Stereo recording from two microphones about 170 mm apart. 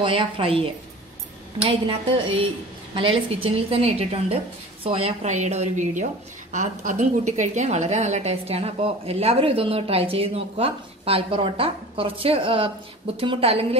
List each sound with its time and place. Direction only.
0.0 s a woman's voice: 30° right (ahead or behind)